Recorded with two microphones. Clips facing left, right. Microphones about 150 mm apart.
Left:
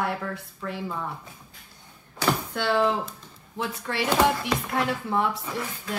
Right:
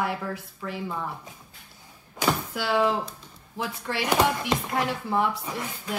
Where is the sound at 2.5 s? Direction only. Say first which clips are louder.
Left 1 dB; 5° right (ahead or behind).